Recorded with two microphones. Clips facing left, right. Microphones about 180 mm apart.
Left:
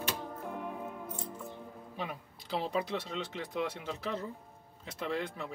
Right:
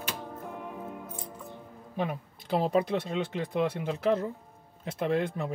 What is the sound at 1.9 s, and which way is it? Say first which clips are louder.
Speech: right 9 dB; 50° right (ahead or behind).